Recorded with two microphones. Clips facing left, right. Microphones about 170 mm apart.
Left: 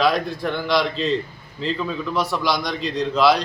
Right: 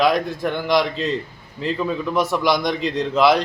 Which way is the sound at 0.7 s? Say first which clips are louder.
Right 1 dB; 50° right (ahead or behind).